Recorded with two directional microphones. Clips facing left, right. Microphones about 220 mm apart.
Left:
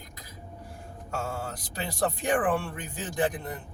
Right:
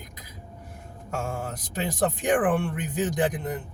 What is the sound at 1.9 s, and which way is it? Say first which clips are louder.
A man's voice: right 3 dB; 20° right (ahead or behind).